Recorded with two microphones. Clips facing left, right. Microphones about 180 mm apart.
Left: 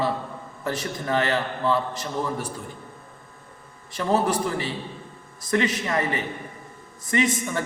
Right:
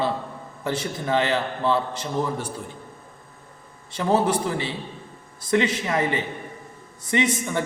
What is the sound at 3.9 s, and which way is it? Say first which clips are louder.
A man's voice: right 1 dB; 20° right (ahead or behind).